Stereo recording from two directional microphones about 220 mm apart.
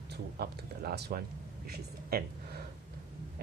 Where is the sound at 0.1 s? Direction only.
45° right (ahead or behind).